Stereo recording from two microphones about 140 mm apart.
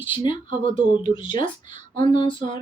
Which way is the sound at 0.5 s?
65° right (ahead or behind).